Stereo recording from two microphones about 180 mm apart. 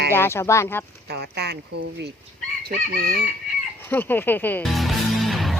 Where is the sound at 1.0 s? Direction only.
65° right (ahead or behind).